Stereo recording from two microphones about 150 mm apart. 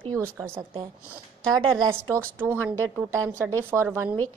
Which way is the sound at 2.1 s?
15° right (ahead or behind).